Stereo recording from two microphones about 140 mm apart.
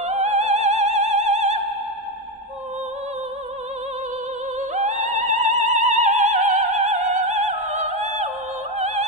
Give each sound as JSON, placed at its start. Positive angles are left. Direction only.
{"t": 0.0, "sound": "opera", "side_deg": -55}
{"t": 4.6, "sound": "opera", "side_deg": -60}
{"t": 8.7, "sound": "music", "side_deg": -55}